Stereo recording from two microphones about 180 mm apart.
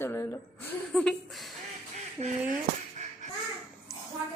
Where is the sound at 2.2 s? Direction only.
35° right (ahead or behind).